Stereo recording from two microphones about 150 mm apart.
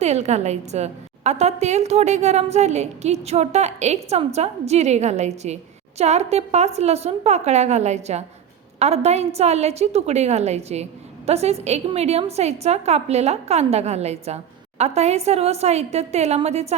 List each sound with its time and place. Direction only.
0.0 s a woman's voice: 50° right (ahead or behind)